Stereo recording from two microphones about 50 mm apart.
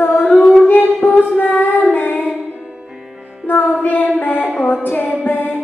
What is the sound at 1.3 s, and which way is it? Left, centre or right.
Child singing, left.